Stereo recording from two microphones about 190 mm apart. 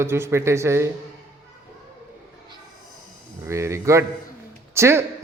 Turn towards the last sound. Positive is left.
turn(degrees=-15)  # may be behind; listen again after turning